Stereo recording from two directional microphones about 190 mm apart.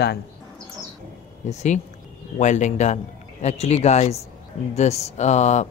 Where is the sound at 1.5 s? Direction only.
40° left (ahead or behind).